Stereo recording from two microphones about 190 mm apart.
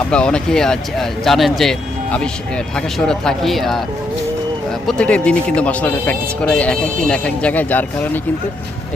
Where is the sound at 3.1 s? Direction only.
Centre (ahead or behind).